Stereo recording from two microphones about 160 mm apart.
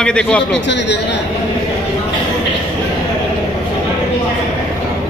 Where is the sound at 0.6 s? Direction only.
90° left.